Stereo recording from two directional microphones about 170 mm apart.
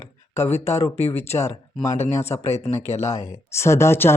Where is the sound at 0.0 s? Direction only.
15° left (ahead or behind).